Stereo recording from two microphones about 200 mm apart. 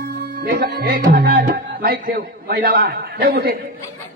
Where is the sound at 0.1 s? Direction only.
60° right (ahead or behind).